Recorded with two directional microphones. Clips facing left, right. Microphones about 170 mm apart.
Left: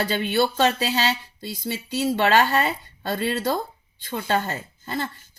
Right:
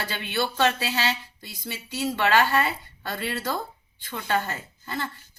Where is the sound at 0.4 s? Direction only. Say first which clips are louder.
Left 3 dB; 20° left (ahead or behind).